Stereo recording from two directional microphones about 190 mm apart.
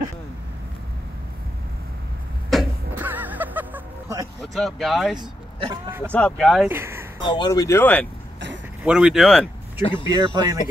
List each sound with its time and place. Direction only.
2.5 s a sound: centre (ahead or behind)
3.0 s music: 10° right (ahead or behind)
4.4 s speech: centre (ahead or behind)
5.2 s speech: 20° right (ahead or behind)
5.9 s speech: 10° right (ahead or behind)
6.1 s speech: 5° left (ahead or behind)
6.7 s speech: 10° right (ahead or behind)
7.2 s speech: 20° left (ahead or behind)
8.8 s speech: 5° right (ahead or behind)
9.8 s speech: 25° left (ahead or behind)
10.0 s speech: 20° right (ahead or behind)